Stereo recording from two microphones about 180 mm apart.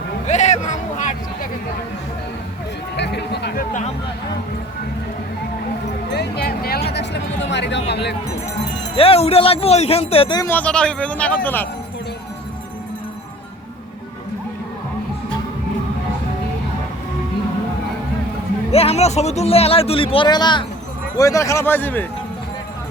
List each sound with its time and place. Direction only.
0.3 s a sound: 40° left (ahead or behind)
2.9 s a sound: 70° left (ahead or behind); by 3.8 s 55° left (ahead or behind)
6.1 s music: 65° left (ahead or behind)
6.9 s music: 70° left (ahead or behind)
7.9 s speech: 70° left (ahead or behind)
9.0 s a man's voice: 35° left (ahead or behind)
10.5 s speech: 5° left (ahead or behind)
18.7 s a man's voice: 35° left (ahead or behind); by 22.0 s 10° left (ahead or behind)